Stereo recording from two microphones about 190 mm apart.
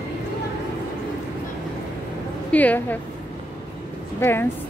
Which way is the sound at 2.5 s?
10° left (ahead or behind).